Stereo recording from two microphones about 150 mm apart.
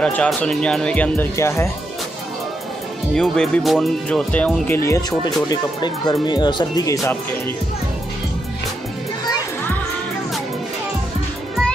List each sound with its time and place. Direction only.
0.0 s speech: 5° left (ahead or behind)
3.2 s speech: 5° left (ahead or behind); by 7.0 s 25° left (ahead or behind)